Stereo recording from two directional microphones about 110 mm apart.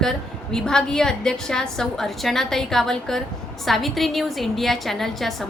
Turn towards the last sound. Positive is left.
turn(degrees=0)  # may be behind; listen again after turning